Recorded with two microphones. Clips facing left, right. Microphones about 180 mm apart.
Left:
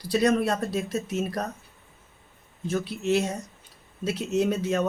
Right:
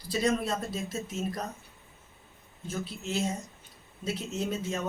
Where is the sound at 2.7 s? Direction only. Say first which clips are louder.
Left 9 dB; 70° left (ahead or behind).